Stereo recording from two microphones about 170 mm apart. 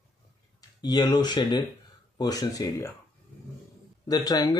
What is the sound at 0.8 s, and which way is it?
Speech, 25° left (ahead or behind).